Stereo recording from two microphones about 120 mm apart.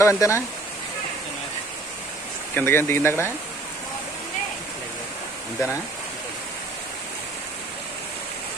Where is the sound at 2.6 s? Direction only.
20° left (ahead or behind).